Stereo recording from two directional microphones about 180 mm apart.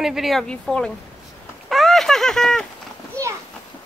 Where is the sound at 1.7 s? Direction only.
Centre (ahead or behind).